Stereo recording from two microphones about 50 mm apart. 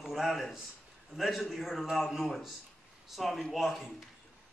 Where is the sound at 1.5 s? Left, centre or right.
Centre.